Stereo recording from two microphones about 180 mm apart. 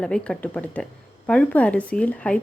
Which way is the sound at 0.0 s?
5° left (ahead or behind).